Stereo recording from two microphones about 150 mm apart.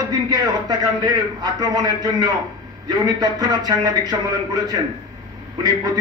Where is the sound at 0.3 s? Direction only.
25° right (ahead or behind).